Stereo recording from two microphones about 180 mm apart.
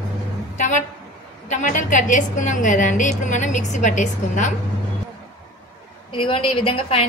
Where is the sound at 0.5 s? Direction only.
45° left (ahead or behind).